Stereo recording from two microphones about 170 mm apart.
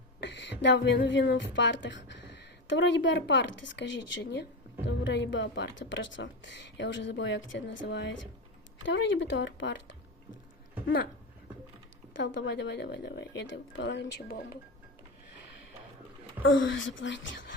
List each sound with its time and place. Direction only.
0.2 s a woman's voice: 90° left
12.1 s a woman's voice: 90° left; by 14.6 s 75° left (ahead or behind)
16.6 s a woman's voice: 90° left